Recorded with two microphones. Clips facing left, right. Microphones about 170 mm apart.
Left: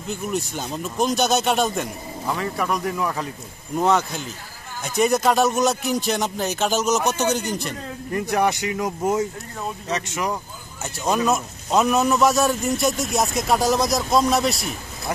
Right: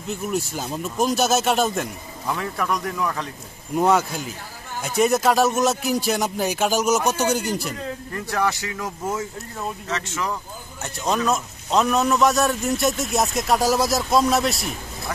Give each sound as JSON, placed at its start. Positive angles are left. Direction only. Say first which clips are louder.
{"t": 0.1, "sound": "a man's voice", "louder": "right 1 dB", "side_deg": -5}
{"t": 3.7, "sound": "a man's voice", "louder": "right 1 dB", "side_deg": -5}
{"t": 8.1, "sound": "a man's voice", "louder": "left 4 dB", "side_deg": 20}